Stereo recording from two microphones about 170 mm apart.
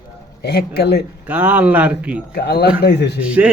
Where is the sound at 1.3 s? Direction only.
10° right (ahead or behind).